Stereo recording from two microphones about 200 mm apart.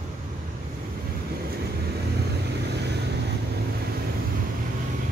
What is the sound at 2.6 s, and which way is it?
Vehicle, 55° right (ahead or behind).